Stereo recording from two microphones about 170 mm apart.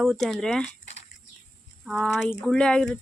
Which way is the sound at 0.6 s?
45° left (ahead or behind).